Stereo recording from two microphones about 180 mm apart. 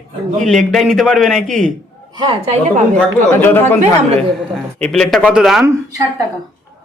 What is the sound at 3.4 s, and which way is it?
Speech, 10° left (ahead or behind).